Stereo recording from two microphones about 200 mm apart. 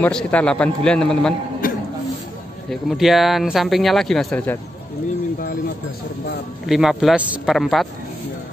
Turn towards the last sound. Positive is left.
turn(degrees=0)  # may be behind; listen again after turning